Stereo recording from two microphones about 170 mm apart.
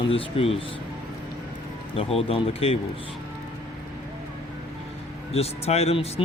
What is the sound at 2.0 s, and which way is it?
Speech, 35° left (ahead or behind).